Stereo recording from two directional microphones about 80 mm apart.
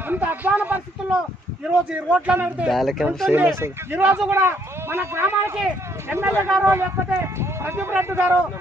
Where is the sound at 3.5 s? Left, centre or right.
Right.